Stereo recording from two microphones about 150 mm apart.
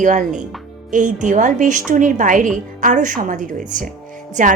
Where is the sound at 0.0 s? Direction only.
55° right (ahead or behind).